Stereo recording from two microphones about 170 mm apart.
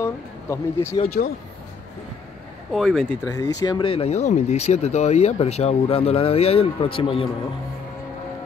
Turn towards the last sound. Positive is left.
turn(degrees=30)  # may be behind; listen again after turning